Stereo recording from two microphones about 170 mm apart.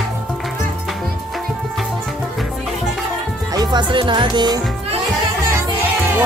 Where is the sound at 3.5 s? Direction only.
25° right (ahead or behind).